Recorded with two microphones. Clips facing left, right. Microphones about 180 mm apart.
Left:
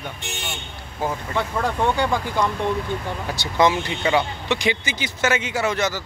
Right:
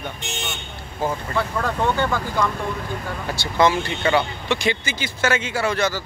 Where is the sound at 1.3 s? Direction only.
15° left (ahead or behind).